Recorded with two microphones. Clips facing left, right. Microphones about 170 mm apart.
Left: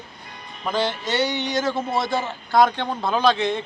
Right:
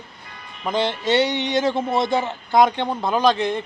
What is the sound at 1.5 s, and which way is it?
A man's voice, 25° right (ahead or behind).